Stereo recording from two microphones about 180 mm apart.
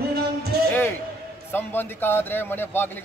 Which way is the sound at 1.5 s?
10° left (ahead or behind).